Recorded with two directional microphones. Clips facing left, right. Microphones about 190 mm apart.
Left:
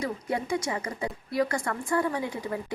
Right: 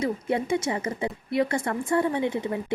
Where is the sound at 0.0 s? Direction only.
25° right (ahead or behind).